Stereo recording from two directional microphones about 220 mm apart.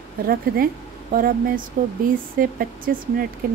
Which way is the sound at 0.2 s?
40° right (ahead or behind).